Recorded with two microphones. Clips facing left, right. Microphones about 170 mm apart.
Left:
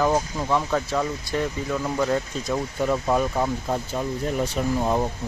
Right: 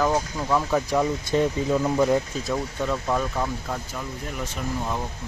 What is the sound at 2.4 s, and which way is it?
Speech, 10° left (ahead or behind).